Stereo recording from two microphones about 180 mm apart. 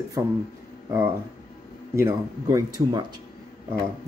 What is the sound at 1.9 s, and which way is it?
Speech, 15° right (ahead or behind).